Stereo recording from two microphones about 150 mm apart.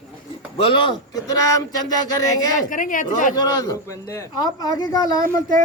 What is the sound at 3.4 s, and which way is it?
A man's voice, 25° left (ahead or behind).